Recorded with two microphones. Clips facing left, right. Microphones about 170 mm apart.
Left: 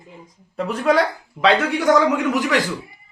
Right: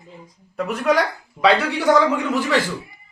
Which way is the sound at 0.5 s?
30° left (ahead or behind).